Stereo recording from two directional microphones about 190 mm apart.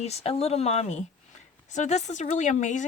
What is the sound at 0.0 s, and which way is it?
Speech, 35° left (ahead or behind).